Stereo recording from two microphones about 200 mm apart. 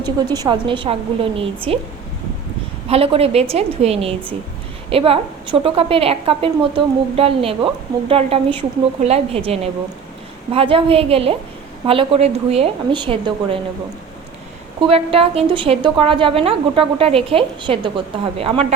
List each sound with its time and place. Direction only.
0.0 s a woman's voice: 20° right (ahead or behind)
2.9 s a woman's voice: 30° right (ahead or behind)
10.5 s a woman's voice: 30° right (ahead or behind)
14.8 s a woman's voice: 30° right (ahead or behind)